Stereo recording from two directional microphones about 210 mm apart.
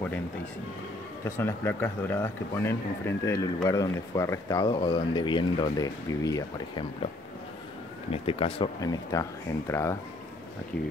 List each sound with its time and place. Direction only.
1.2 s speech: 10° left (ahead or behind)
8.1 s speech: 25° left (ahead or behind)
9.1 s speech: 15° left (ahead or behind)